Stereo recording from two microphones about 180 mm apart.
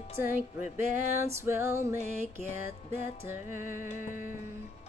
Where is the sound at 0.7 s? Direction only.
15° right (ahead or behind).